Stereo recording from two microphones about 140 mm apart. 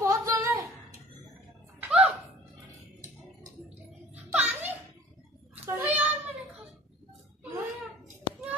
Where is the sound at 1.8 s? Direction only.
10° right (ahead or behind).